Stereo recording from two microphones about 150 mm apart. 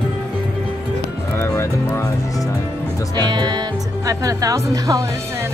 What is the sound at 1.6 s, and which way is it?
Speech, 20° left (ahead or behind).